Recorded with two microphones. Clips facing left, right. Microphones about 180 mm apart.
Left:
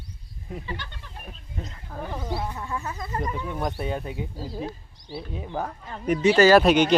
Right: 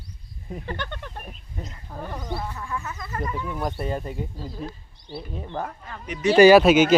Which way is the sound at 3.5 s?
Centre (ahead or behind).